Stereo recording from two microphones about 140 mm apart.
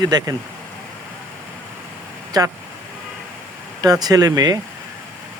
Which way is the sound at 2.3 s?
25° right (ahead or behind).